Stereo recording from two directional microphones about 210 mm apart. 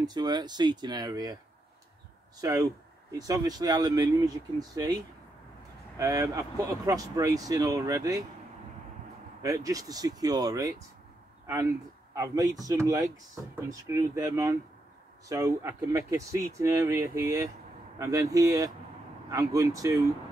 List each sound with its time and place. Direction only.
0.0 s speech: 20° right (ahead or behind)
2.4 s speech: 15° right (ahead or behind)
5.9 s speech: 15° right (ahead or behind)
9.4 s speech: 15° right (ahead or behind)
12.1 s speech: 15° right (ahead or behind)